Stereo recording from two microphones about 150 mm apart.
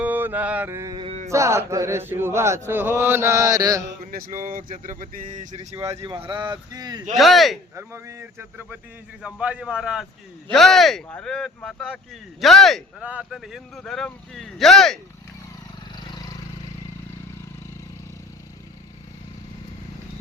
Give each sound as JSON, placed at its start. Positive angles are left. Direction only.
{"t": 0.0, "sound": "mantra", "side_deg": -10}
{"t": 0.9, "sound": "a sound", "side_deg": -45}
{"t": 1.3, "sound": "speech", "side_deg": -20}
{"t": 2.6, "sound": "mantra", "side_deg": -15}
{"t": 4.0, "sound": "a sound", "side_deg": -70}
{"t": 5.8, "sound": "speech", "side_deg": -20}
{"t": 6.1, "sound": "speech", "side_deg": -35}
{"t": 7.2, "sound": "speech", "side_deg": 0}
{"t": 7.8, "sound": "mantra", "side_deg": -20}
{"t": 10.5, "sound": "speech", "side_deg": 0}